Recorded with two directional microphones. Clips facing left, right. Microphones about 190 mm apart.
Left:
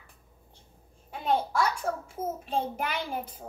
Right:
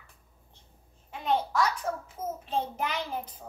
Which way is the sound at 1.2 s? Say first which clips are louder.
Even; 10° left (ahead or behind).